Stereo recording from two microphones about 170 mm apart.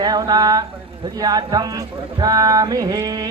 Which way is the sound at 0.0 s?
25° right (ahead or behind).